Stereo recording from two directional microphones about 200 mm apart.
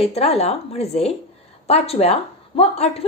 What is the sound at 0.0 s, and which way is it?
A woman's voice, 30° left (ahead or behind).